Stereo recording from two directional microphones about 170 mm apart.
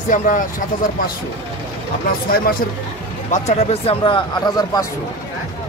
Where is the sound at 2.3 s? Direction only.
60° left (ahead or behind).